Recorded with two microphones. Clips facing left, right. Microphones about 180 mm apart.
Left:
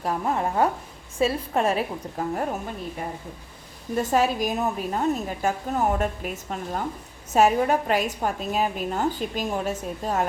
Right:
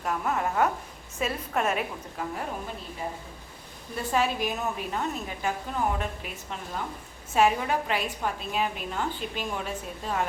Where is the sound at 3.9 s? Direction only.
40° left (ahead or behind).